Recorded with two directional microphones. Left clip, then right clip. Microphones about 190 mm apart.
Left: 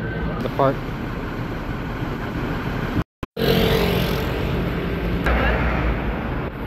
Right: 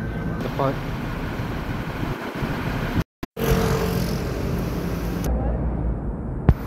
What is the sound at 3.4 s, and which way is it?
Vehicle, 50° left (ahead or behind).